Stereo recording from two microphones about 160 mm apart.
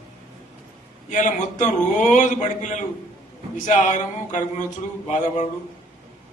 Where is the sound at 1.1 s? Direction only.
50° left (ahead or behind).